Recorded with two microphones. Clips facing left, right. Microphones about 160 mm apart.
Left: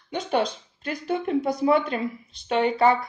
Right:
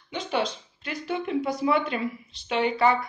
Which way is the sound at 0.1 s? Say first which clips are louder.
Left 3 dB; 45° left (ahead or behind).